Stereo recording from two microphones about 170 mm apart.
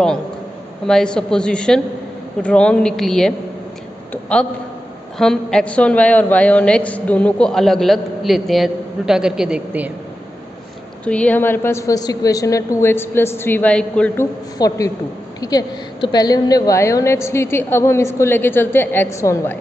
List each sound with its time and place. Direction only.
0.8 s a woman's voice: 5° left (ahead or behind)
11.1 s a woman's voice: 10° left (ahead or behind)
14.6 s a man's voice: 25° left (ahead or behind)